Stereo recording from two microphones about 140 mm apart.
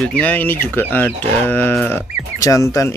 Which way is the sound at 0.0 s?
5° left (ahead or behind).